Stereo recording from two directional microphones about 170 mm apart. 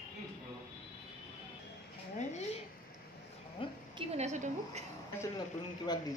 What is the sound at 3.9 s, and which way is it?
Speech, 40° right (ahead or behind).